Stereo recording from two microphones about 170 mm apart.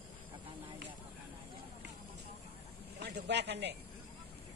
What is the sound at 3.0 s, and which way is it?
Speech, 85° right.